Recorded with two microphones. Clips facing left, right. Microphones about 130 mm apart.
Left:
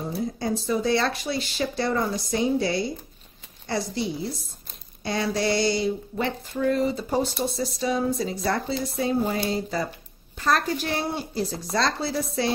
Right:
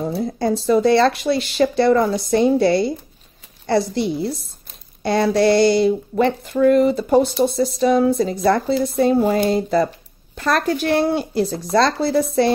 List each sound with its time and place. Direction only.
0.1 s speech: 65° right (ahead or behind)